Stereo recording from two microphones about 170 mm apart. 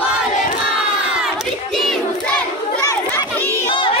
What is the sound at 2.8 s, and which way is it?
Crowd, 15° left (ahead or behind).